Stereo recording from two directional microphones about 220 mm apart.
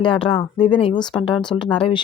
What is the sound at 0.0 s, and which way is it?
Speech, 25° left (ahead or behind).